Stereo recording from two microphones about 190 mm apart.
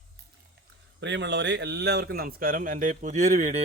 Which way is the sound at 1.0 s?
65° right (ahead or behind).